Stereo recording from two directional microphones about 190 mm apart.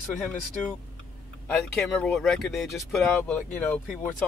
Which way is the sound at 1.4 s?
Centre (ahead or behind).